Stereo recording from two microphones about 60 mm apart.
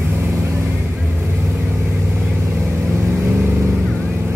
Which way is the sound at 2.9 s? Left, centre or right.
Right.